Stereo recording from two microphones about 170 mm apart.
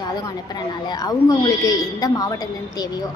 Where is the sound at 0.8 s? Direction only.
20° left (ahead or behind).